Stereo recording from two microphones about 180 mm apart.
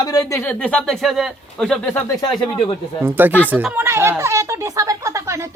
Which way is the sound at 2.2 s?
25° left (ahead or behind).